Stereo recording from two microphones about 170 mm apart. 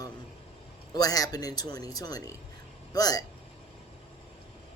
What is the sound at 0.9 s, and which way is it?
Speech, 20° left (ahead or behind).